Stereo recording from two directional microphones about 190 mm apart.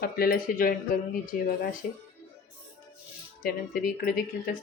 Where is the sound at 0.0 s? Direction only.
50° left (ahead or behind).